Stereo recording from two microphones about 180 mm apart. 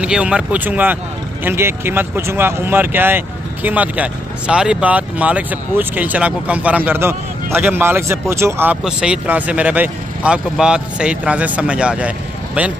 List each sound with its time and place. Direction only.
0.0 s speech: 5° right (ahead or behind)